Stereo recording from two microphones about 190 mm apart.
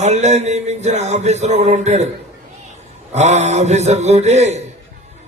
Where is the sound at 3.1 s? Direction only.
35° right (ahead or behind).